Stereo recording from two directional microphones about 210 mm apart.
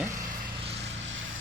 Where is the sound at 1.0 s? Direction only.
65° right (ahead or behind).